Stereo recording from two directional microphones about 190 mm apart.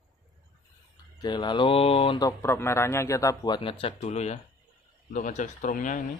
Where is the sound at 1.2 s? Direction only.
20° left (ahead or behind); by 6.1 s 45° left (ahead or behind).